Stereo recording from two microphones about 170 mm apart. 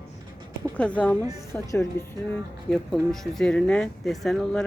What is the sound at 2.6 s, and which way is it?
Speech, 5° left (ahead or behind).